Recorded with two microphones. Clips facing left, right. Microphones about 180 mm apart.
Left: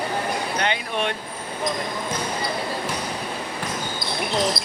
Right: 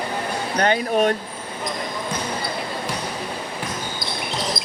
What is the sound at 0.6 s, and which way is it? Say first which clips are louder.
Speech: right 11 dB; 40° right (ahead or behind).